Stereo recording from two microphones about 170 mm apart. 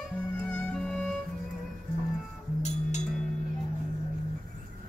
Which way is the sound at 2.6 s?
40° left (ahead or behind).